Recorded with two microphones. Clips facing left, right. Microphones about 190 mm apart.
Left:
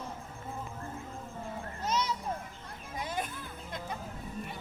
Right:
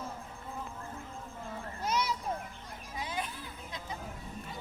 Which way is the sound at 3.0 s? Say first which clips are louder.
Left 2 dB; 45° left (ahead or behind).